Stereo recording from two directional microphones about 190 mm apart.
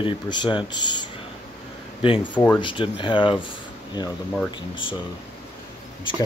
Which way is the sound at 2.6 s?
25° left (ahead or behind).